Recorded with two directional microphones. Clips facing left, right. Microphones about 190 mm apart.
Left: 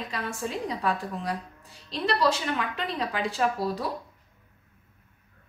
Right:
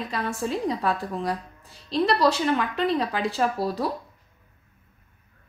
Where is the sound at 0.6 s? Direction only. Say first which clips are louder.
Right 3 dB; 35° right (ahead or behind).